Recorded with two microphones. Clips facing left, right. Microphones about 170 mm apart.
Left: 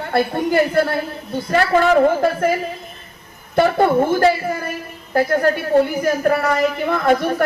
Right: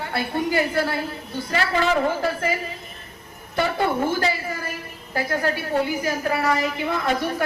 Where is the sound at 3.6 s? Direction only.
50° left (ahead or behind).